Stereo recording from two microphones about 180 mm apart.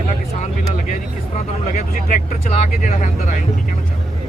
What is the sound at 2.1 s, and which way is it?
Speech, 45° left (ahead or behind).